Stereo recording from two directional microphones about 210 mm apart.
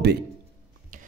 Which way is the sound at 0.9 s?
40° right (ahead or behind).